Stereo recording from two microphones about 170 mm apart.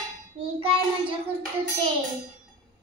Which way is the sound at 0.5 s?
30° right (ahead or behind).